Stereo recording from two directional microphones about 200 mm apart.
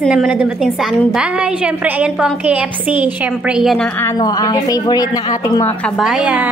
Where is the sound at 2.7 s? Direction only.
25° left (ahead or behind).